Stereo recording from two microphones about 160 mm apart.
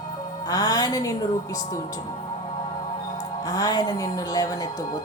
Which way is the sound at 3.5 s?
25° left (ahead or behind).